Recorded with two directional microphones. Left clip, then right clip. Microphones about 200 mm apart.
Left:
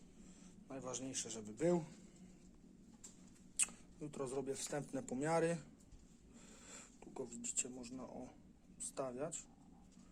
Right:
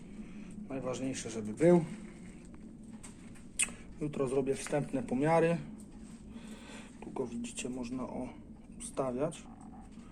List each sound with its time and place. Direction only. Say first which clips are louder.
0.7 s a man's voice: right 9 dB; 20° left (ahead or behind)
3.6 s speech: right 8 dB; 5° left (ahead or behind)
6.3 s a sound: right 8 dB; 15° left (ahead or behind)
9.0 s a man's voice: right 10 dB; 10° left (ahead or behind)